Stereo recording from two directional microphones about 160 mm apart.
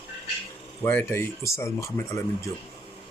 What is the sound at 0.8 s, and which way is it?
Speech, 15° left (ahead or behind).